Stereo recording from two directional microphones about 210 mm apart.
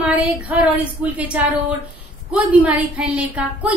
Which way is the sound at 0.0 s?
5° right (ahead or behind).